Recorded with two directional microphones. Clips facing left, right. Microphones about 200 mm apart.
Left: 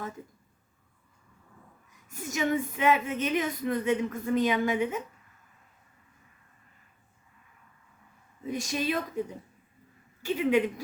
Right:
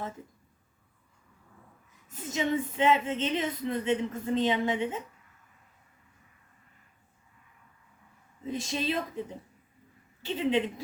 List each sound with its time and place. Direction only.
2.0 s speech: 25° right (ahead or behind)
8.4 s speech: 25° right (ahead or behind)
10.2 s speech: 25° right (ahead or behind)